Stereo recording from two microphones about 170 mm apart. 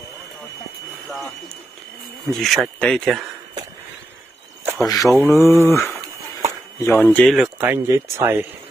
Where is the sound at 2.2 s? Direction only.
Centre (ahead or behind).